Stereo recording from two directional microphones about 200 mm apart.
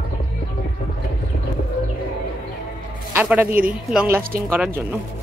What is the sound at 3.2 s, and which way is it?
Speech, 10° right (ahead or behind).